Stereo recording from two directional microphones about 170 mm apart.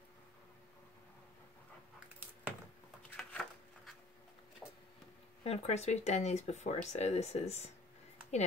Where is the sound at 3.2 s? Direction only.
5° left (ahead or behind).